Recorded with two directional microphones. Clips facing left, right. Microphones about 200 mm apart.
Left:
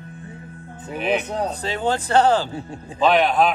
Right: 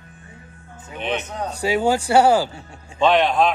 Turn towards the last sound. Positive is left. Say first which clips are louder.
# even
turn(degrees=0)  # may be behind; listen again after turning